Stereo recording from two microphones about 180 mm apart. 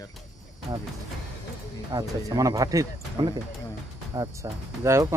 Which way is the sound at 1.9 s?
20° right (ahead or behind).